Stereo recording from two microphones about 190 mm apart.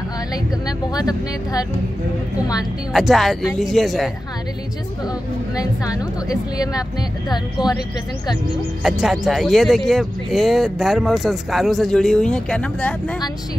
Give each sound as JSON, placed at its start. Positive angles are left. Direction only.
{"t": 0.3, "sound": "speech", "side_deg": 20}
{"t": 2.9, "sound": "speech", "side_deg": 0}
{"t": 5.6, "sound": "speech", "side_deg": 20}
{"t": 8.8, "sound": "speech", "side_deg": 0}